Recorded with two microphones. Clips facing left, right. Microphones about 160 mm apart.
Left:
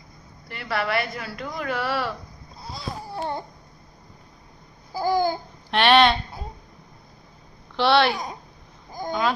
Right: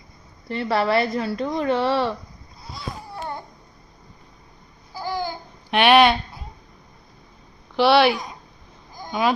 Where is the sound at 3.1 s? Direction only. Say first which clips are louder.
Left 4 dB; 30° left (ahead or behind).